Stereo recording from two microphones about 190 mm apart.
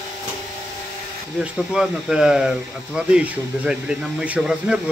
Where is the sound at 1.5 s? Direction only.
5° right (ahead or behind).